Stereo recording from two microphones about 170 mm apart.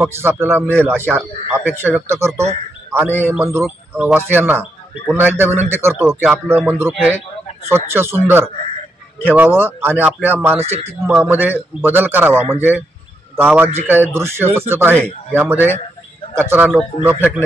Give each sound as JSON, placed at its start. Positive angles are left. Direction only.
{"t": 0.0, "sound": "a man's voice", "side_deg": -15}
{"t": 3.1, "sound": "a man's voice", "side_deg": 10}
{"t": 3.9, "sound": "a man's voice", "side_deg": -10}